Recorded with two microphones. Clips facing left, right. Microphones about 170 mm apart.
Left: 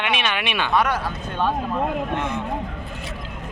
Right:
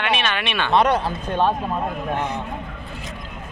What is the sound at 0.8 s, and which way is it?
Speech, 30° right (ahead or behind).